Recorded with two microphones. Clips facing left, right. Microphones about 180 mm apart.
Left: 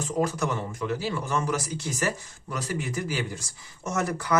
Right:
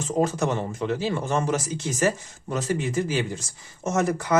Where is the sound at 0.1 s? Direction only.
25° right (ahead or behind).